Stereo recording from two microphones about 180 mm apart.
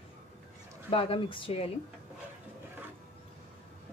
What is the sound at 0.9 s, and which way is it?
Speech, 30° left (ahead or behind).